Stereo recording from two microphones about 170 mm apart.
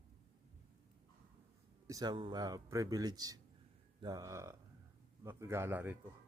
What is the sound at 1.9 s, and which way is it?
A man's voice, 25° right (ahead or behind).